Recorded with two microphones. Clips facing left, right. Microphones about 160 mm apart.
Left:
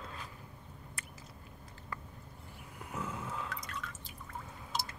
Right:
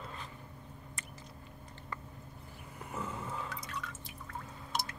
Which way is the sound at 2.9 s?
Centre (ahead or behind).